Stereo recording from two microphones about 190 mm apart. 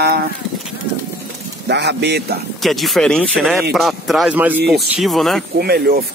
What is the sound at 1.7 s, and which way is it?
Speech, 60° right (ahead or behind).